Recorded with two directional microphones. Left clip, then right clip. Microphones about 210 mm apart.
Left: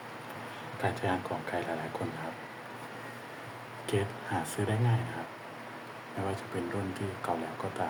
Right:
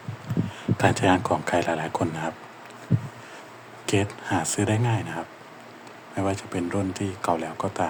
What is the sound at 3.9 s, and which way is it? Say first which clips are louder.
Speech: right 8 dB; 35° right (ahead or behind).